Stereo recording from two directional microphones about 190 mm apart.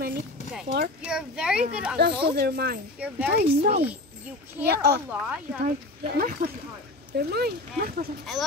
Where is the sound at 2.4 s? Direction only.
55° right (ahead or behind).